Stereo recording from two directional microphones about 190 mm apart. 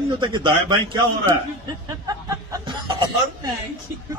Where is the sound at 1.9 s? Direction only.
15° right (ahead or behind).